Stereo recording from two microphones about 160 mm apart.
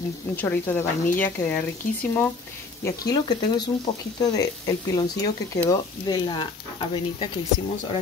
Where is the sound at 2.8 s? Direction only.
25° left (ahead or behind).